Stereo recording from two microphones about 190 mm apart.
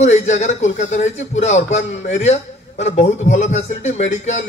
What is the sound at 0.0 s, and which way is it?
A man's voice, 40° left (ahead or behind).